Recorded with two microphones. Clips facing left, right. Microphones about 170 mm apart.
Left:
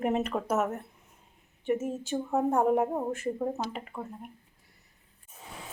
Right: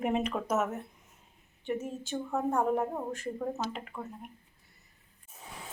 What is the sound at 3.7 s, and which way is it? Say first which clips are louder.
Speech: left 2 dB; 5° left (ahead or behind).